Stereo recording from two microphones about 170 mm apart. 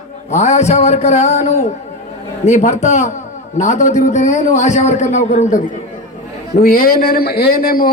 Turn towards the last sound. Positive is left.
turn(degrees=60)  # may be behind; listen again after turning